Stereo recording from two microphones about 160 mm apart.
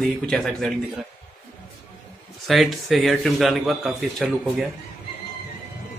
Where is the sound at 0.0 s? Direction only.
5° left (ahead or behind).